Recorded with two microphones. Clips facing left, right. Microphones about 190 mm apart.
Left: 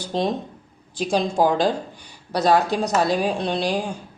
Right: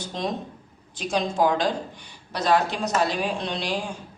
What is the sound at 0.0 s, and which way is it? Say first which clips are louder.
A woman's voice: left 5 dB; 30° left (ahead or behind).